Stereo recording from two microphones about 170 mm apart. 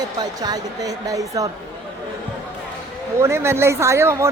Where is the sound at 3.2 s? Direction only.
15° right (ahead or behind).